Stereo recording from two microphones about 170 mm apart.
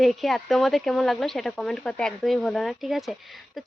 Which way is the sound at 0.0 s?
Centre (ahead or behind).